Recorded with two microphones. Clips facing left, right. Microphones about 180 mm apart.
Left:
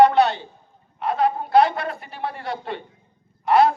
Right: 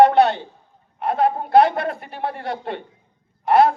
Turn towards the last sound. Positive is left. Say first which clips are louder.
# right 1 dB
turn(degrees=-55)  # may be behind; listen again after turning